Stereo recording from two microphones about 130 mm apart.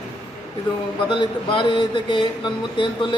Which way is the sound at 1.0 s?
40° left (ahead or behind).